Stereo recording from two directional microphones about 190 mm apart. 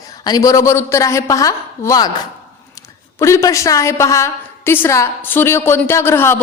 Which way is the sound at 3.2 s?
15° left (ahead or behind).